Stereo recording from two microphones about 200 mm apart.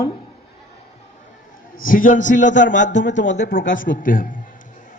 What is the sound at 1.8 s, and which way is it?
Speech, 40° left (ahead or behind).